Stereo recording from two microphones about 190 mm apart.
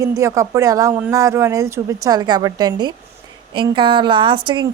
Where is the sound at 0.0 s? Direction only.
15° right (ahead or behind).